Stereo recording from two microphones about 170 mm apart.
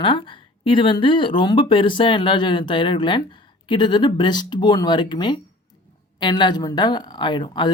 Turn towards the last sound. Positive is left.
turn(degrees=25)  # may be behind; listen again after turning